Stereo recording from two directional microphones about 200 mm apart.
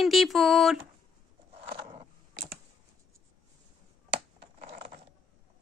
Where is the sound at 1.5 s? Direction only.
30° right (ahead or behind).